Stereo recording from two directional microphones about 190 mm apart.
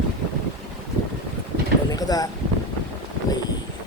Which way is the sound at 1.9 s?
20° left (ahead or behind).